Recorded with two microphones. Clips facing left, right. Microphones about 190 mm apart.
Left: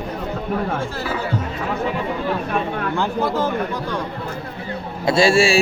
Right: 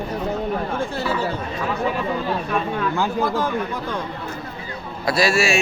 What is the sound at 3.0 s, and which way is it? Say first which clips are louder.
Speech: left 2 dB; 10° right (ahead or behind).